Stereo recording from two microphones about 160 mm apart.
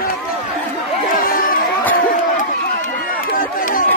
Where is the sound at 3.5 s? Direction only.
60° left (ahead or behind).